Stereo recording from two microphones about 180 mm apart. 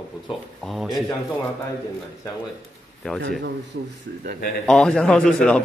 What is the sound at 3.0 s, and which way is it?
Speech, 5° left (ahead or behind).